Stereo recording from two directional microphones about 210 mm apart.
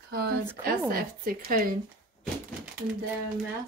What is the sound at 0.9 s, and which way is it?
Speech, 45° right (ahead or behind).